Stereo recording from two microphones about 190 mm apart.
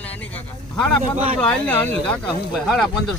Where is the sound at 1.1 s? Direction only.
30° right (ahead or behind).